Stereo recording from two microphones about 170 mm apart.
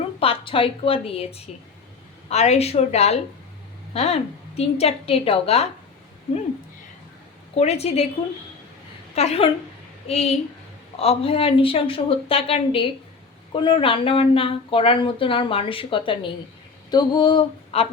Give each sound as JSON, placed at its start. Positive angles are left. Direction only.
{"t": 0.2, "sound": "speech", "side_deg": 35}
{"t": 7.5, "sound": "speech", "side_deg": 40}
{"t": 9.1, "sound": "speech", "side_deg": 35}
{"t": 16.9, "sound": "a sound", "side_deg": 25}